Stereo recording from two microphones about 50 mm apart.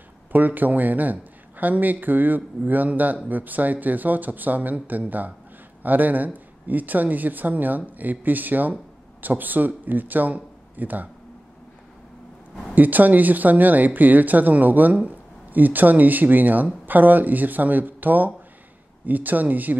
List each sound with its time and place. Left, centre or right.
0.3 s speech: right
12.7 s speech: right